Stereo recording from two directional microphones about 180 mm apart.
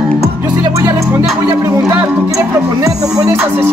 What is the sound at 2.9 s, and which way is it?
Speech, 20° right (ahead or behind).